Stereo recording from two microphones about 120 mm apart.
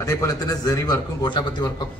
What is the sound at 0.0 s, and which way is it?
A man's voice, 30° left (ahead or behind).